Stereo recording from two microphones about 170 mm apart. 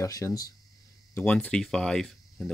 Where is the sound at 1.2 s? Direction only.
5° left (ahead or behind).